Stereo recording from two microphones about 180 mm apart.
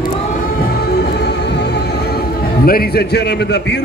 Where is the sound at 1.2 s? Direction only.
70° left (ahead or behind).